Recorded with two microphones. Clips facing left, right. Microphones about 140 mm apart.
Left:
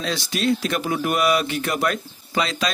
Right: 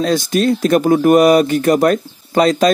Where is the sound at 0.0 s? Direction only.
45° right (ahead or behind).